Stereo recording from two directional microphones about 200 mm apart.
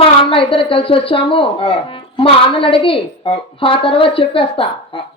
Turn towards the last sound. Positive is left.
turn(degrees=25)  # may be behind; listen again after turning